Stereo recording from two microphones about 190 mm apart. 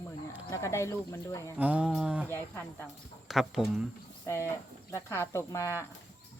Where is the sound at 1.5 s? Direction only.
5° right (ahead or behind).